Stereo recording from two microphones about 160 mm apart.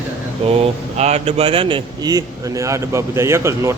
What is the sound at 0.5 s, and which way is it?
Speech, 40° right (ahead or behind).